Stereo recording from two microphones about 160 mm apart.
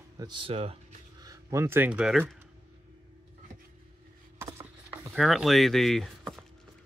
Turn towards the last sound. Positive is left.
turn(degrees=0)  # may be behind; listen again after turning